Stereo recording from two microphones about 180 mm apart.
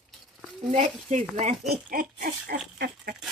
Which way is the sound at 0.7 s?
40° right (ahead or behind).